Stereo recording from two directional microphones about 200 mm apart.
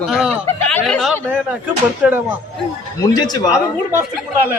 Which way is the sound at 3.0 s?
20° left (ahead or behind).